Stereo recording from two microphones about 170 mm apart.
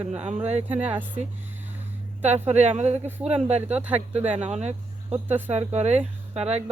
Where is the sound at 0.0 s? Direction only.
40° right (ahead or behind).